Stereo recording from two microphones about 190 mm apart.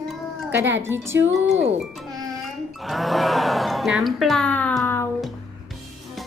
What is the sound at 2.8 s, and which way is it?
Speech, centre (ahead or behind).